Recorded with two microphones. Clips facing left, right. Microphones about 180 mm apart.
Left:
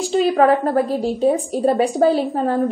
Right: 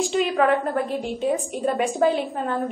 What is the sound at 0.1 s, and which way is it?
A woman's voice, 35° left (ahead or behind).